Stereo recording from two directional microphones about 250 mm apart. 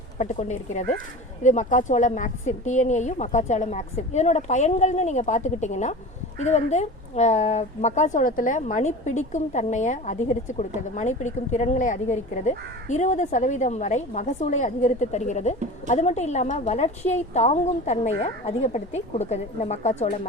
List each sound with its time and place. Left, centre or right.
0.2 s speech: left